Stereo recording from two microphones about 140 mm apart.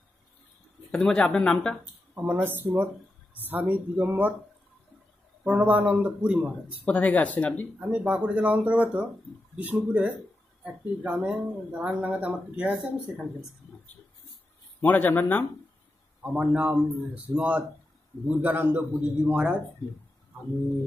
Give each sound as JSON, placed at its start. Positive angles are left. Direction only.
{"t": 0.9, "sound": "speech", "side_deg": 5}
{"t": 2.1, "sound": "speech", "side_deg": -15}
{"t": 5.4, "sound": "speech", "side_deg": -10}
{"t": 6.8, "sound": "speech", "side_deg": 10}
{"t": 7.8, "sound": "speech", "side_deg": -10}
{"t": 14.8, "sound": "speech", "side_deg": 15}
{"t": 16.2, "sound": "speech", "side_deg": -10}